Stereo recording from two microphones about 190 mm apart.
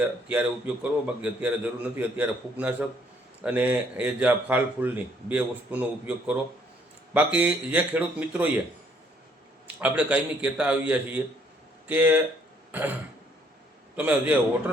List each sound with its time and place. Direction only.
0.3 s a man's voice: 5° right (ahead or behind)
9.8 s a man's voice: 5° right (ahead or behind)